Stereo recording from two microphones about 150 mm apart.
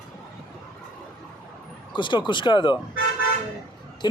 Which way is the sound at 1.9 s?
30° left (ahead or behind).